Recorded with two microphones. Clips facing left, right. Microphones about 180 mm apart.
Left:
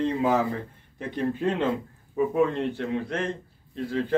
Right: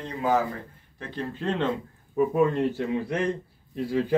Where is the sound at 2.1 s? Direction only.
5° right (ahead or behind).